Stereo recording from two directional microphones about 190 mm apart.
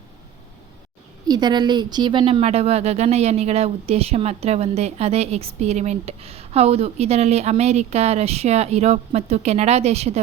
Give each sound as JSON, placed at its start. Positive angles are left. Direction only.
{"t": 1.3, "sound": "speech", "side_deg": -20}